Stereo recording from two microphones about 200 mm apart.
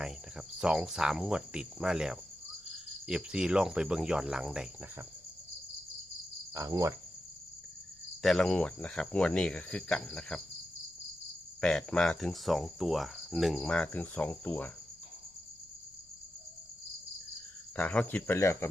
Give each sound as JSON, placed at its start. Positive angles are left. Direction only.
{"t": 0.0, "sound": "cricket", "side_deg": -5}
{"t": 6.5, "sound": "cricket", "side_deg": -15}
{"t": 8.2, "sound": "cricket", "side_deg": 0}
{"t": 11.6, "sound": "cricket", "side_deg": 5}
{"t": 17.7, "sound": "speech", "side_deg": 5}